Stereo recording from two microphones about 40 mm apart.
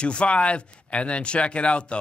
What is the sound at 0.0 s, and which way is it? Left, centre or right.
Speech, left.